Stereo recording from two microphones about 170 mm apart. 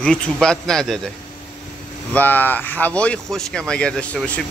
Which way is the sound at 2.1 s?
10° left (ahead or behind).